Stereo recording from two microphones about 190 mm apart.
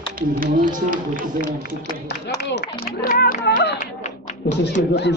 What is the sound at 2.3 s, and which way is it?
Speech, 60° left (ahead or behind).